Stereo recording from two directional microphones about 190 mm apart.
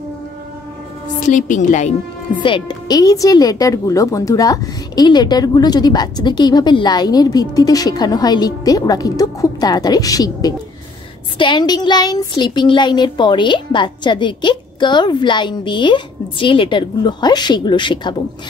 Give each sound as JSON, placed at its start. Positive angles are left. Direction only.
{"t": 1.3, "sound": "a woman's voice", "side_deg": 40}
{"t": 2.4, "sound": "speech", "side_deg": 25}